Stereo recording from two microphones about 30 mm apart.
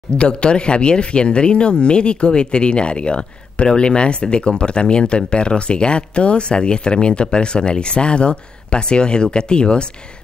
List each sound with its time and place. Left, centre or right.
0.2 s speech: left